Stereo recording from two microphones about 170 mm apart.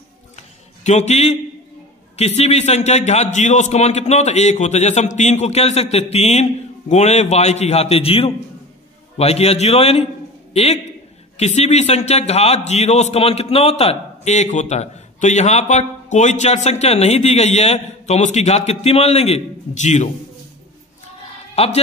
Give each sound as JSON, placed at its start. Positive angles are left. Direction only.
{"t": 0.4, "sound": "a sound", "side_deg": 40}
{"t": 2.1, "sound": "a man's voice", "side_deg": 40}
{"t": 21.6, "sound": "a man's voice", "side_deg": 35}